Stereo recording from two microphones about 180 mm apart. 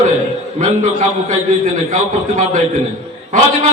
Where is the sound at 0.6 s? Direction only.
45° right (ahead or behind).